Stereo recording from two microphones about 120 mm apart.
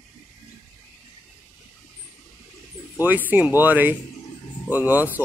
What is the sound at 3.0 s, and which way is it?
Speech, 15° right (ahead or behind).